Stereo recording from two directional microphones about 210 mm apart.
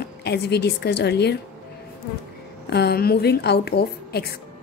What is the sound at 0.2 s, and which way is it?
A woman's voice, 50° left (ahead or behind).